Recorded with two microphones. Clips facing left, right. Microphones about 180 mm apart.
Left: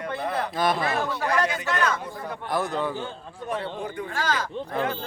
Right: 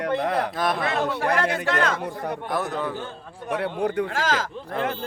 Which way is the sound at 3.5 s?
70° right (ahead or behind).